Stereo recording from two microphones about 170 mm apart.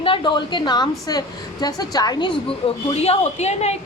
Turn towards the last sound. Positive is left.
turn(degrees=40)  # may be behind; listen again after turning